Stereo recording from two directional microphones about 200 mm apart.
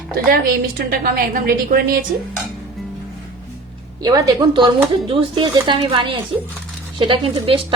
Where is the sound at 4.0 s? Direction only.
20° right (ahead or behind).